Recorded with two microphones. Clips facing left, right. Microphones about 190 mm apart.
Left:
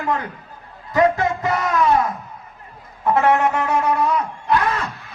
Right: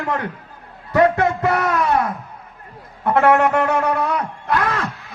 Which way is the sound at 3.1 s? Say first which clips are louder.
Right 2 dB; 60° right (ahead or behind).